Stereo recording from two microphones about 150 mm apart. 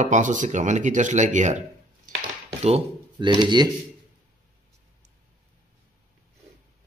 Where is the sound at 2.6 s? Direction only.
40° right (ahead or behind).